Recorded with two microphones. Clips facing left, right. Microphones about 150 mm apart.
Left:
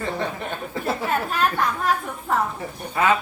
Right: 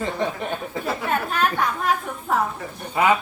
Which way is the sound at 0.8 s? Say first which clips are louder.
Left 1 dB; centre (ahead or behind).